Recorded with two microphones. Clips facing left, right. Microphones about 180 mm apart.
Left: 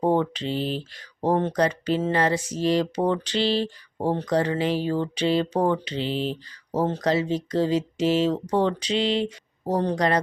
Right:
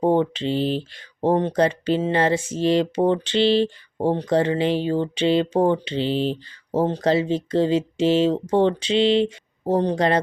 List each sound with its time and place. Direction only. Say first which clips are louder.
0.0 s speech: right 3 dB; 25° right (ahead or behind)